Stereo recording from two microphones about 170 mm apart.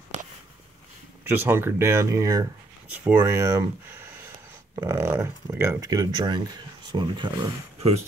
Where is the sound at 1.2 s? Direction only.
10° right (ahead or behind).